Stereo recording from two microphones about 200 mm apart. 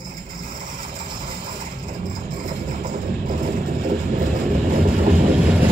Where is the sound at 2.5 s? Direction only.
40° right (ahead or behind).